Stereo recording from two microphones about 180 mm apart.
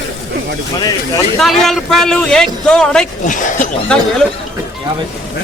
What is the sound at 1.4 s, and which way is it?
A man's voice, centre (ahead or behind).